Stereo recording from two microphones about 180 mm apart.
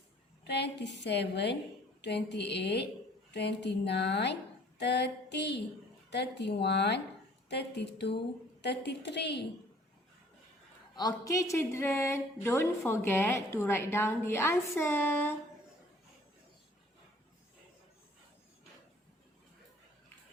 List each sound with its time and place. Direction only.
0.4 s a woman's voice: 70° left (ahead or behind)
10.9 s speech: 20° left (ahead or behind)